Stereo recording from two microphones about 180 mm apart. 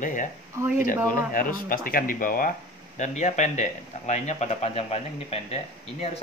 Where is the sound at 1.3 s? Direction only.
50° left (ahead or behind); by 5.5 s 35° left (ahead or behind).